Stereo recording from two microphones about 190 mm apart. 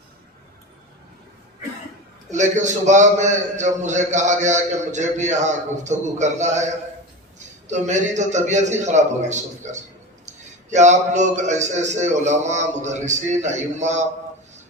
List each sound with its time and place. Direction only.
2.3 s a man's voice: 40° right (ahead or behind)